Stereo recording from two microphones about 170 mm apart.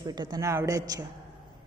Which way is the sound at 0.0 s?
25° right (ahead or behind).